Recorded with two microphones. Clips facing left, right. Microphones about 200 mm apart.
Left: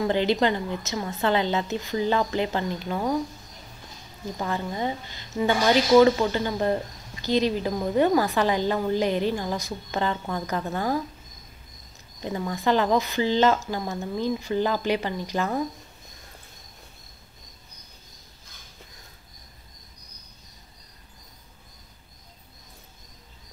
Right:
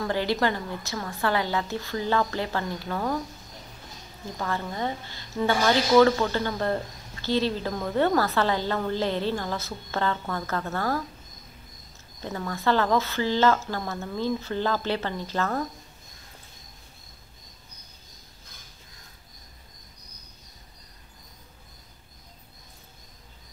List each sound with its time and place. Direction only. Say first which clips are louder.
0.0 s a woman's voice: left 3 dB; 20° left (ahead or behind)
4.4 s a woman's voice: left 1 dB; 15° left (ahead or behind)
12.2 s a woman's voice: left 3 dB; 15° left (ahead or behind)